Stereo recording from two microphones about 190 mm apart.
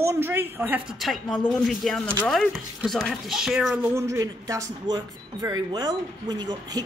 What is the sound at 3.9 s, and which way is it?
A woman's voice, 15° right (ahead or behind).